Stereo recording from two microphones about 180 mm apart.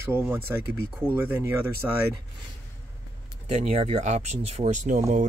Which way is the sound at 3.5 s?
35° right (ahead or behind).